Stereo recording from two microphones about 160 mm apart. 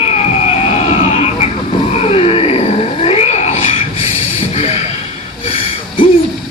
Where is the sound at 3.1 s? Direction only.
40° left (ahead or behind).